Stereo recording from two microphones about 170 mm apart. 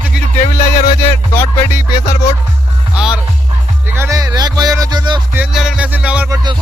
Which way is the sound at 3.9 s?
15° right (ahead or behind).